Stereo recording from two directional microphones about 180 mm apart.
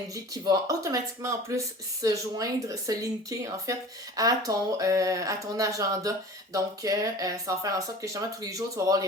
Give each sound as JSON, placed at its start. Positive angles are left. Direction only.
{"t": 0.1, "sound": "speech", "side_deg": -20}